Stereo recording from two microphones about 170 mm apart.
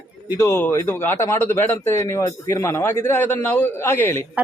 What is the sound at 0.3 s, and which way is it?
A man's voice, 15° left (ahead or behind).